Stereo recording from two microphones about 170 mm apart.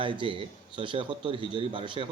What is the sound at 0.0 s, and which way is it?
A man's voice, 30° right (ahead or behind).